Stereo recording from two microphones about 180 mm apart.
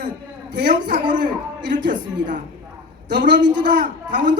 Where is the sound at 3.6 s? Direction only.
45° right (ahead or behind).